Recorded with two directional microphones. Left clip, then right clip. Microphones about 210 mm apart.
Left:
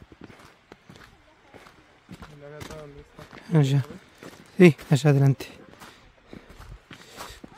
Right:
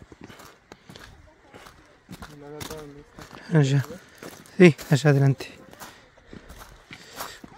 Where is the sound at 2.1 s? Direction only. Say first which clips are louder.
Right 2 dB; 55° right (ahead or behind).